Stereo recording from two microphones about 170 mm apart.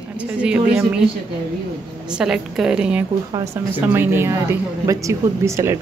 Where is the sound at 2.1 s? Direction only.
5° right (ahead or behind).